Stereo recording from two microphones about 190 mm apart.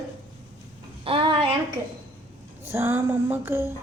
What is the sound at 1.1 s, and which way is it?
Speech, 25° right (ahead or behind).